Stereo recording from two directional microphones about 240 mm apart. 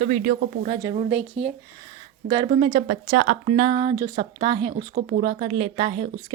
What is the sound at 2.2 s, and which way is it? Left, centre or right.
Speech, centre.